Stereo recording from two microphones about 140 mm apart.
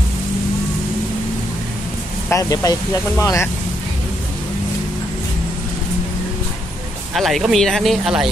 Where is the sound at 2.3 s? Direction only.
25° left (ahead or behind).